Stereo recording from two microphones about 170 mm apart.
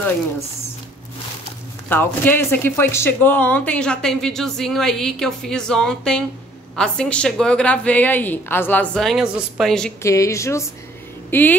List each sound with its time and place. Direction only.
1.9 s speech: 10° left (ahead or behind)
10.0 s a woman's voice: 20° left (ahead or behind)